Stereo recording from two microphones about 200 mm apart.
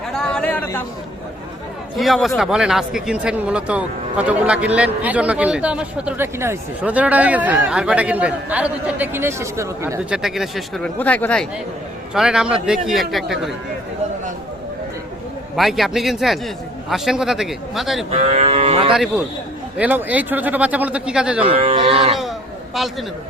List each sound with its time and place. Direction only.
0.1 s chatter: 5° left (ahead or behind)
2.0 s speech: centre (ahead or behind)
10.2 s a man's voice: centre (ahead or behind)
15.5 s a man's voice: centre (ahead or behind)
18.1 s cattle: 30° right (ahead or behind)
18.9 s a man's voice: centre (ahead or behind)
21.4 s speech: 30° right (ahead or behind)
22.7 s a man's voice: centre (ahead or behind)